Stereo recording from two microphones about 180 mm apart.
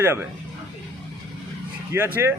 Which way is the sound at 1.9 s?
10° right (ahead or behind).